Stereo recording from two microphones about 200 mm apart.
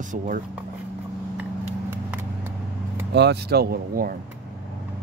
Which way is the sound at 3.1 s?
55° right (ahead or behind).